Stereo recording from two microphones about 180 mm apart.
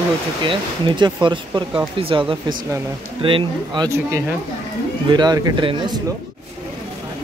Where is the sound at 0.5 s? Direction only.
25° right (ahead or behind).